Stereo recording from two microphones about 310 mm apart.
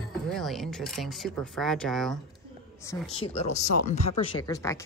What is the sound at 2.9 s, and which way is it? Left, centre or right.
Speech, centre.